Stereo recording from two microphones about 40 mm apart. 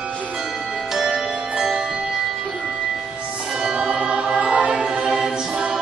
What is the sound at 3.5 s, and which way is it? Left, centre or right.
Music, centre.